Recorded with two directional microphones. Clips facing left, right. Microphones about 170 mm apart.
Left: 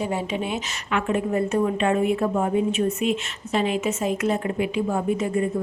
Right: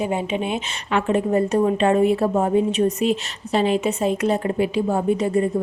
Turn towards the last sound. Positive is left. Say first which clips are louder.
# right 4 dB
turn(degrees=-35)  # may be behind; listen again after turning